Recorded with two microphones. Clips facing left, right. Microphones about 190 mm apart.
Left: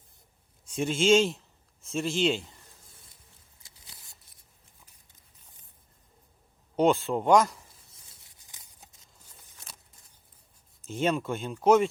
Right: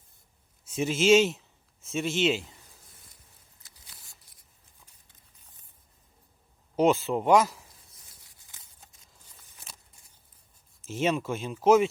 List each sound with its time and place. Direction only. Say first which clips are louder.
0.6 s speech: right 1 dB; 5° right (ahead or behind)
6.7 s speech: even; 5° right (ahead or behind)
8.2 s a sound: even; 20° left (ahead or behind)
10.8 s speech: even; 5° right (ahead or behind)